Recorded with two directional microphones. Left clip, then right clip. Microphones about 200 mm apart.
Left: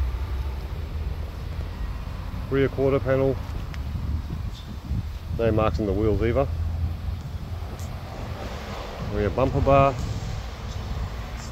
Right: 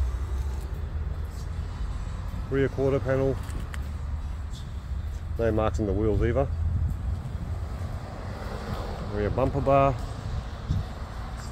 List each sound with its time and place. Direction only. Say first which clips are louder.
2.5 s speech: left 3 dB; centre (ahead or behind)
5.4 s speech: left 3 dB; 5° right (ahead or behind)
9.1 s speech: left 3 dB; centre (ahead or behind)